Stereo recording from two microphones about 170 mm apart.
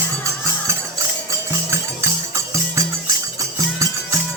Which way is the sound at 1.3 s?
15° right (ahead or behind).